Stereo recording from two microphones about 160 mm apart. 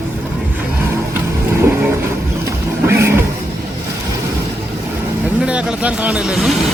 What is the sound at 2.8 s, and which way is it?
Vehicle, 15° right (ahead or behind).